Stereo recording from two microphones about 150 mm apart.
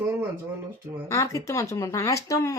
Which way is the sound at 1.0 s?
20° left (ahead or behind).